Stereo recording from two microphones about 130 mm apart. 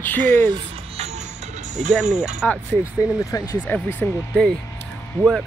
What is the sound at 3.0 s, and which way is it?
Speech, 25° left (ahead or behind).